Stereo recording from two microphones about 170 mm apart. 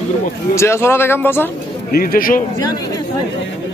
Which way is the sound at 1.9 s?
60° left (ahead or behind).